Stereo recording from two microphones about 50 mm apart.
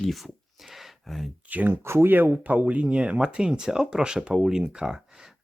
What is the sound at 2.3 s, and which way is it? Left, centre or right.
Speech, right.